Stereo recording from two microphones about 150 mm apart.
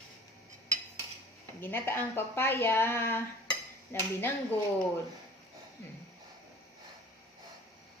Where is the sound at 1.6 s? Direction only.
15° left (ahead or behind).